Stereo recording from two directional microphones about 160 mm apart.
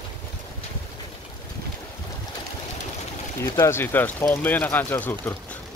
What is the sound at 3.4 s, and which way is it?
Speech, 15° left (ahead or behind).